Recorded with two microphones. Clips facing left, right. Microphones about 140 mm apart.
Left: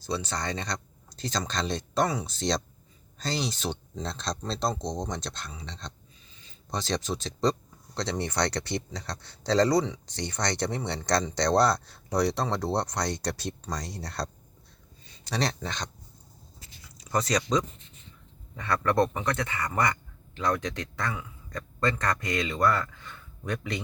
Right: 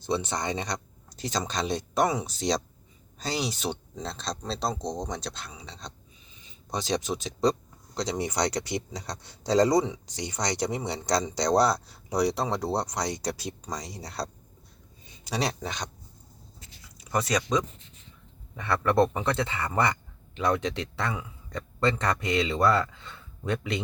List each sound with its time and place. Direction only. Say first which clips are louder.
0.0 s speech: right 3 dB; 20° right (ahead or behind)
17.1 s speech: even; 5° right (ahead or behind)
18.5 s speech: right 1 dB; 20° right (ahead or behind)